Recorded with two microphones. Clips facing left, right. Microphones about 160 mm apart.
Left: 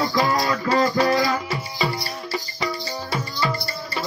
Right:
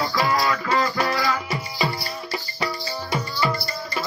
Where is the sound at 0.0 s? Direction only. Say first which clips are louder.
Left 1 dB; 40° left (ahead or behind).